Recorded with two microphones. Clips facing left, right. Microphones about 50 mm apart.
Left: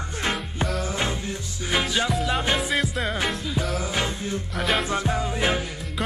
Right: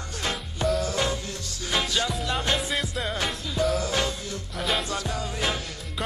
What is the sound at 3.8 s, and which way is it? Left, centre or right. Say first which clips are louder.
Music: left 1 dB; left.